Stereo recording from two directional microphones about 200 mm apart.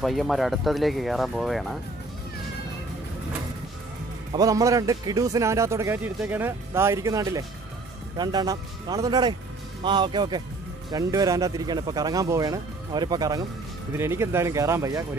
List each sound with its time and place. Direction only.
0.0 s speech: centre (ahead or behind)
4.3 s speech: 15° right (ahead or behind)